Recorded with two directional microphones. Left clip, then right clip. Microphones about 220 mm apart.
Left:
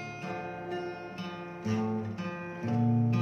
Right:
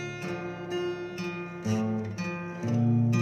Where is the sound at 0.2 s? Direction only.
35° right (ahead or behind).